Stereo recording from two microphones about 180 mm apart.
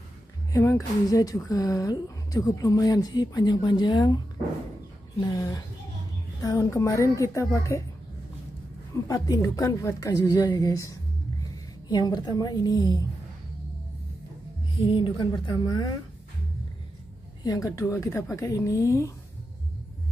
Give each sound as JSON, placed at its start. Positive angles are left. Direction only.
{"t": 0.5, "sound": "speech", "side_deg": 20}
{"t": 5.2, "sound": "a woman's voice", "side_deg": 20}
{"t": 9.0, "sound": "speech", "side_deg": 20}
{"t": 14.8, "sound": "speech", "side_deg": 30}
{"t": 17.4, "sound": "a woman's voice", "side_deg": 20}